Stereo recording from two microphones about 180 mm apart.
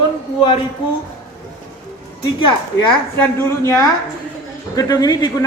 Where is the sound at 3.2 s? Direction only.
15° left (ahead or behind).